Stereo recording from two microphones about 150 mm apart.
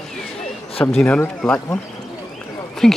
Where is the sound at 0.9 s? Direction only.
10° left (ahead or behind).